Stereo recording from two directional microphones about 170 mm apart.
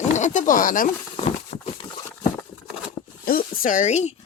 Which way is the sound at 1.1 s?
40° left (ahead or behind).